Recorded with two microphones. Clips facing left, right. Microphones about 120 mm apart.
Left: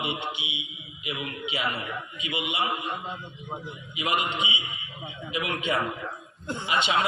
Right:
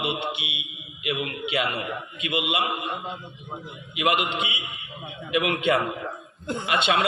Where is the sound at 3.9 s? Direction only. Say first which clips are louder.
Right 4 dB; 70° right (ahead or behind).